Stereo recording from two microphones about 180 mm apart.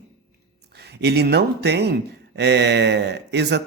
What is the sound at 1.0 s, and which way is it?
Speech, 65° right (ahead or behind).